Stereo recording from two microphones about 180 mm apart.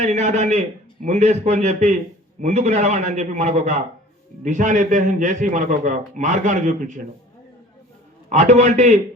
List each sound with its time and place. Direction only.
0.0 s a man's voice: 40° right (ahead or behind)
8.3 s a man's voice: 40° right (ahead or behind)